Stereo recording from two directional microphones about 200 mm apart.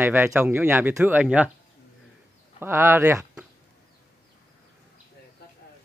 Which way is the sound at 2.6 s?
15° right (ahead or behind).